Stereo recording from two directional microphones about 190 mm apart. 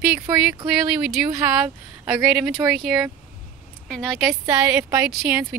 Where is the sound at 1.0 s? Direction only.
5° right (ahead or behind).